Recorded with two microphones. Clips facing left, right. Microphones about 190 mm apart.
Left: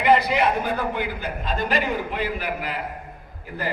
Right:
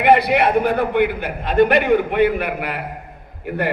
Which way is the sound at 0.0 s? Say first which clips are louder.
Right 4 dB; 60° right (ahead or behind).